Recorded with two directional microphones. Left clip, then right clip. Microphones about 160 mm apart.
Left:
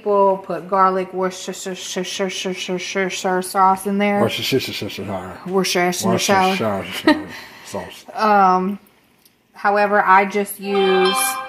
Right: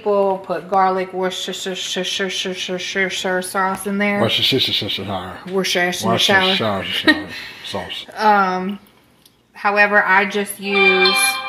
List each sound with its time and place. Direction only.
0.0 s speech: 70° left (ahead or behind)
4.2 s speech: 5° left (ahead or behind)
5.5 s speech: 70° left (ahead or behind)
6.6 s speech: 10° left (ahead or behind)
6.9 s speech: 60° left (ahead or behind)
8.2 s speech: 60° left (ahead or behind)
9.8 s speech: 55° left (ahead or behind)
10.7 s speech: 20° left (ahead or behind)